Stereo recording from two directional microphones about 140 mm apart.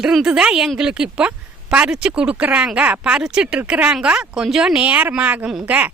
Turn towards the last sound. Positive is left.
turn(degrees=-10)  # may be behind; listen again after turning